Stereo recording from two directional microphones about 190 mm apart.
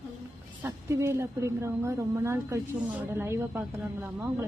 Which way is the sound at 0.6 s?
15° right (ahead or behind).